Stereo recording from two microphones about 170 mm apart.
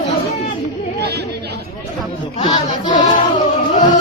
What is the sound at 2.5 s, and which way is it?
Child singing, 50° left (ahead or behind).